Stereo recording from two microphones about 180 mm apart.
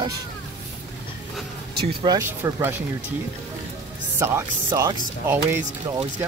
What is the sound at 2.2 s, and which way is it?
Speech, 15° right (ahead or behind).